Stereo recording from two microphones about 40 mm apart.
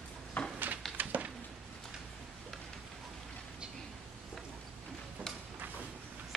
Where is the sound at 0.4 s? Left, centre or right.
Left.